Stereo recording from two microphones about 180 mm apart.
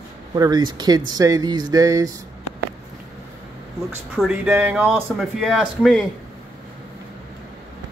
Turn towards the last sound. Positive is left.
turn(degrees=0)  # may be behind; listen again after turning